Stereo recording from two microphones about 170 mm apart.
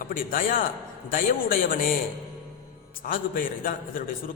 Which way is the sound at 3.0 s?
55° left (ahead or behind).